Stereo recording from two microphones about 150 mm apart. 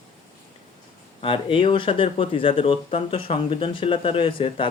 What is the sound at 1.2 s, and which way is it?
Speech, 35° left (ahead or behind).